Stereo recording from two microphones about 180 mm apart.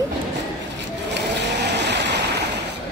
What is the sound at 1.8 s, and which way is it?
Waves, 75° right (ahead or behind).